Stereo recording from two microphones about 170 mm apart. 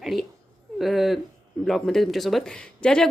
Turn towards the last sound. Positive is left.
turn(degrees=5)  # may be behind; listen again after turning